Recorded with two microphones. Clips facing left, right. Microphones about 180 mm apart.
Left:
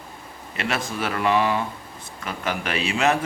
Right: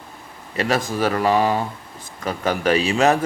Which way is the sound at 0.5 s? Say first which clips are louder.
Right 6 dB; 35° right (ahead or behind).